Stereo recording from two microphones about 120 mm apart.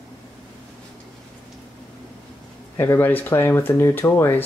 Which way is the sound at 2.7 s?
20° left (ahead or behind).